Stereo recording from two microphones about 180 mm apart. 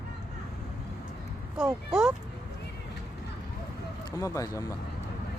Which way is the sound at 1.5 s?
5° right (ahead or behind).